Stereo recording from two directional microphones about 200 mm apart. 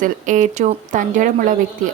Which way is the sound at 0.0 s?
40° right (ahead or behind).